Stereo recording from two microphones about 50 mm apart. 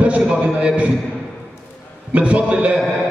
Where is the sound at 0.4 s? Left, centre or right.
Right.